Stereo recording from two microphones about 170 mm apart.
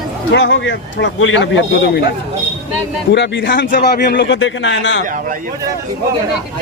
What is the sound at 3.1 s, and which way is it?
A man's voice, 80° left.